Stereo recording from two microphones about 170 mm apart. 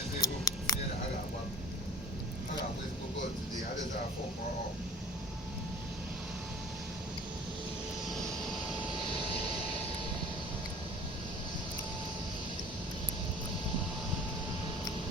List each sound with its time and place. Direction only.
0.2 s scissors: 20° left (ahead or behind)